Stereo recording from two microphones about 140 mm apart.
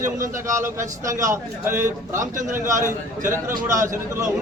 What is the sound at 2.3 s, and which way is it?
Speech, 65° right (ahead or behind).